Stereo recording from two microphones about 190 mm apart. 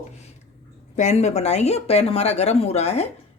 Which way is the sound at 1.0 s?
35° left (ahead or behind).